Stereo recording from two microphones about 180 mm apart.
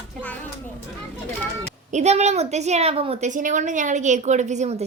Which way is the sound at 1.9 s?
40° right (ahead or behind).